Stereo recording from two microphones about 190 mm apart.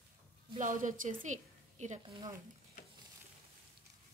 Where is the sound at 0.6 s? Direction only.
45° right (ahead or behind).